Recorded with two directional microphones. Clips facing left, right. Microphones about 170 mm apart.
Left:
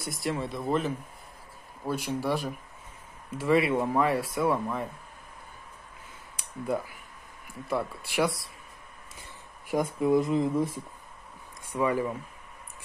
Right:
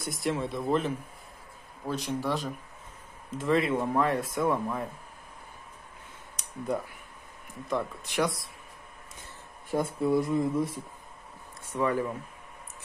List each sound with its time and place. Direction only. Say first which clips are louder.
0.0 s speech: right 1 dB; centre (ahead or behind)
2.1 s speech: left 1 dB; 10° left (ahead or behind)
6.3 s speech: left 1 dB; centre (ahead or behind)
9.7 s speech: left 2 dB; 15° left (ahead or behind)
11.6 s speech: left 1 dB; 10° left (ahead or behind)